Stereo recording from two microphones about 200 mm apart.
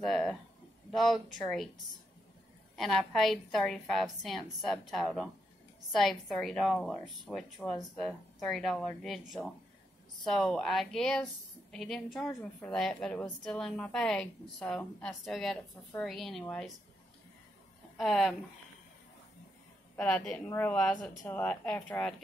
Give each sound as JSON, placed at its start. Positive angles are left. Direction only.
{"t": 0.0, "sound": "a sound", "side_deg": 5}
{"t": 0.9, "sound": "a woman's voice", "side_deg": 0}
{"t": 2.7, "sound": "a woman's voice", "side_deg": 0}
{"t": 10.2, "sound": "a woman's voice", "side_deg": 0}
{"t": 17.9, "sound": "a woman's voice", "side_deg": 0}
{"t": 20.0, "sound": "a woman's voice", "side_deg": 5}